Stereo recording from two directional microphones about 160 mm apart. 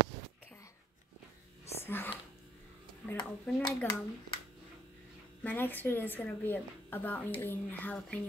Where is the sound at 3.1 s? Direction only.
25° left (ahead or behind).